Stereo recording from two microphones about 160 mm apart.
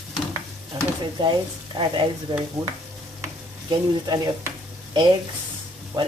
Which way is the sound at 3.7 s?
25° right (ahead or behind).